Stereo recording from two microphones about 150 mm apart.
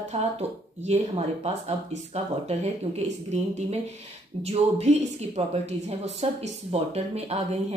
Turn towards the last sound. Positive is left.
turn(degrees=-50)  # may be behind; listen again after turning